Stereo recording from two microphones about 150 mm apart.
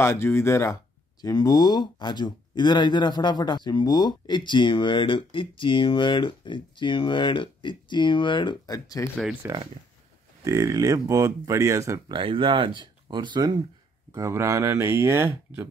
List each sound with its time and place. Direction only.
0.0 s speech: 15° left (ahead or behind)
9.1 s speech: 10° right (ahead or behind)
10.4 s speech: 20° right (ahead or behind)
12.1 s speech: 35° right (ahead or behind)
14.1 s speech: 20° right (ahead or behind)